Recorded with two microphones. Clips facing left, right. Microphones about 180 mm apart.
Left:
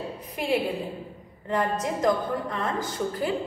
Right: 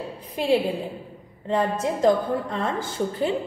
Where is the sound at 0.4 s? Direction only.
30° right (ahead or behind).